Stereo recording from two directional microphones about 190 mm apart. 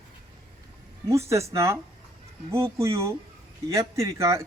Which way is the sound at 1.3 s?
15° right (ahead or behind).